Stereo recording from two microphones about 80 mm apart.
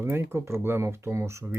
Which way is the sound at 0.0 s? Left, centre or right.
Right.